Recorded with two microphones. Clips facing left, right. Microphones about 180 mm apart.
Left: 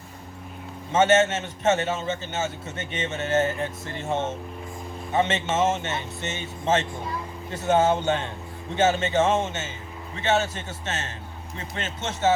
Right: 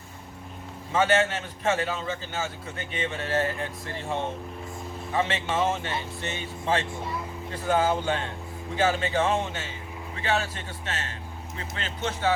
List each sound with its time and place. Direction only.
0.9 s a man's voice: 25° left (ahead or behind)